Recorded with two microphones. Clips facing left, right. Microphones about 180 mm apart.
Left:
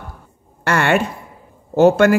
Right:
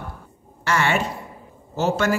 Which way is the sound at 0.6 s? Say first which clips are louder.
Left 5 dB; 60° left (ahead or behind).